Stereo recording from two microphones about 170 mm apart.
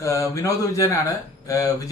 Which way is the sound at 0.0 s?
20° left (ahead or behind).